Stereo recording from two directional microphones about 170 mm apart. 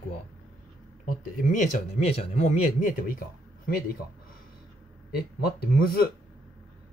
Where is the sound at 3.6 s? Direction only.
60° left (ahead or behind).